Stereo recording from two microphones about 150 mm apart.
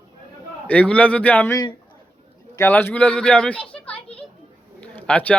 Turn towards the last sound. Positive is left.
turn(degrees=10)  # may be behind; listen again after turning